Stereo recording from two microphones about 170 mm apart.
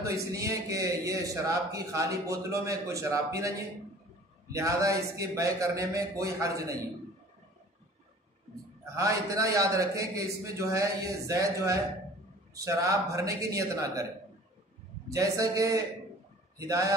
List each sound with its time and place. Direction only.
0.0 s a man's voice: 20° right (ahead or behind)
8.9 s a man's voice: 20° right (ahead or behind)
15.0 s a man's voice: 20° right (ahead or behind)